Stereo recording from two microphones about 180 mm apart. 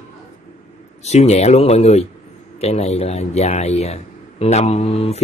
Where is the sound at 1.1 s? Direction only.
35° left (ahead or behind).